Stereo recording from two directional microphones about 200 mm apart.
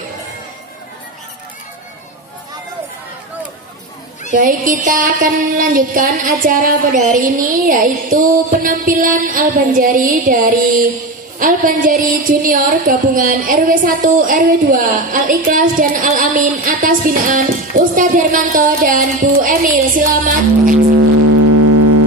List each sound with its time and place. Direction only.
4.3 s a woman's voice: 40° right (ahead or behind)